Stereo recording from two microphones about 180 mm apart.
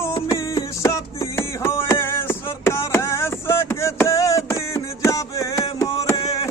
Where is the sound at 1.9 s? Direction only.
15° left (ahead or behind).